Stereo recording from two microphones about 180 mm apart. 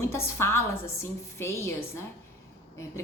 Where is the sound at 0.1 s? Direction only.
15° left (ahead or behind).